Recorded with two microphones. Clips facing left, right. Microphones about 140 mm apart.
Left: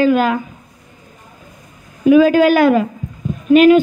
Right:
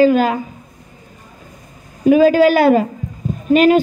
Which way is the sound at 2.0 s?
40° right (ahead or behind).